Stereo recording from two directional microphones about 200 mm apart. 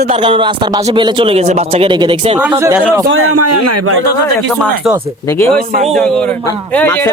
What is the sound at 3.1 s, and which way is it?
Speech, 90° right.